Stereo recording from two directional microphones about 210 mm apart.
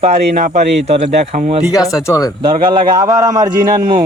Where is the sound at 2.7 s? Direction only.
20° right (ahead or behind).